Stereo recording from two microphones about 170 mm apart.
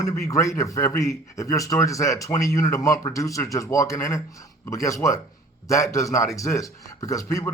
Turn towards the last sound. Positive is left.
turn(degrees=20)  # may be behind; listen again after turning